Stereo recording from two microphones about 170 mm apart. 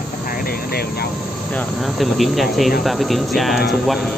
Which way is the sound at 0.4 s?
65° left (ahead or behind).